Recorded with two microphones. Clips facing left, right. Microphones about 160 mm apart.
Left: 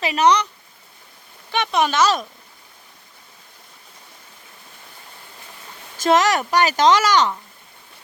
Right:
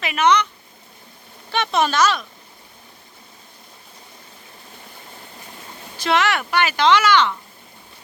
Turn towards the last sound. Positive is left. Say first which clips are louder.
# even
turn(degrees=40)  # may be behind; listen again after turning